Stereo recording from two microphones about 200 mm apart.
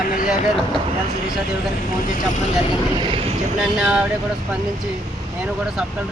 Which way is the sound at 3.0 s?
25° right (ahead or behind).